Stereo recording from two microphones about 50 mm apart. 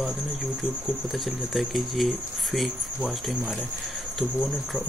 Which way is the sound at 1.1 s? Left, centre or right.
Centre.